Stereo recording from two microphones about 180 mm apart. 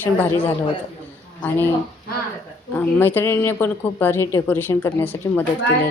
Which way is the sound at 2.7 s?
10° left (ahead or behind).